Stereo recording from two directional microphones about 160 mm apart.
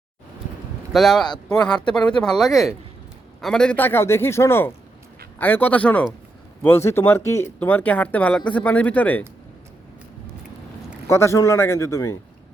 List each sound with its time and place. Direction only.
0.9 s speech: centre (ahead or behind)
1.5 s speech: 25° left (ahead or behind)
1.8 s speech: 5° left (ahead or behind)
11.1 s speech: 15° left (ahead or behind)